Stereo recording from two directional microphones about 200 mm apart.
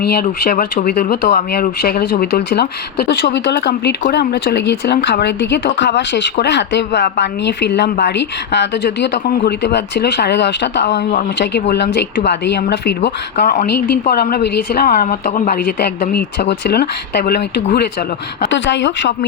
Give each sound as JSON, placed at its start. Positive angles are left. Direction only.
{"t": 0.0, "sound": "a woman's voice", "side_deg": 50}
{"t": 13.3, "sound": "a woman's voice", "side_deg": 40}
{"t": 18.5, "sound": "speech", "side_deg": 65}